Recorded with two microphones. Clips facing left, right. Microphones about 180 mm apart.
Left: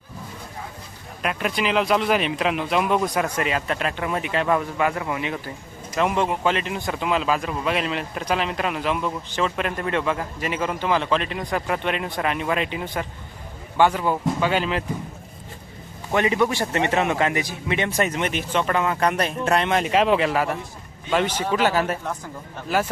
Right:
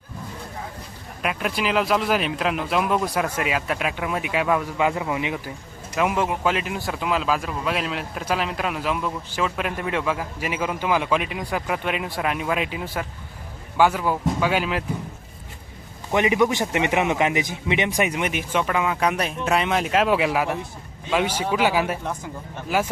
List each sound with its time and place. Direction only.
1.2 s speech: centre (ahead or behind)
4.8 s a man's voice: 15° right (ahead or behind)
6.0 s a man's voice: 5° right (ahead or behind)
16.1 s a man's voice: 15° right (ahead or behind)